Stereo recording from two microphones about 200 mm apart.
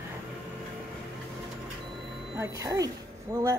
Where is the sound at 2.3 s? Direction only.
15° right (ahead or behind).